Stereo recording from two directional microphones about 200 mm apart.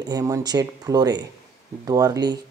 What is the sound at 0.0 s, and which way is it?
Speech, 20° right (ahead or behind).